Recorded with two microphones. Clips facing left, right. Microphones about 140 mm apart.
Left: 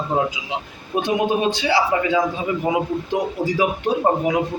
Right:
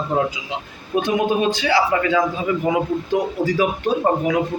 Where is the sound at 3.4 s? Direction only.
20° left (ahead or behind).